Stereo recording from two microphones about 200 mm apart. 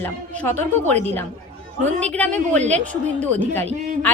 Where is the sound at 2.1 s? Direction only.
5° left (ahead or behind).